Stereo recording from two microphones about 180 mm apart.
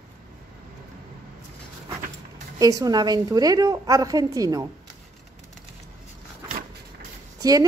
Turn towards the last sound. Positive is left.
turn(degrees=-20)  # may be behind; listen again after turning